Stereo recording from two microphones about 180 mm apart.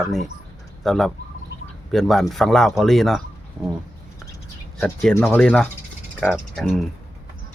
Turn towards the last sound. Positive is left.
turn(degrees=0)  # may be behind; listen again after turning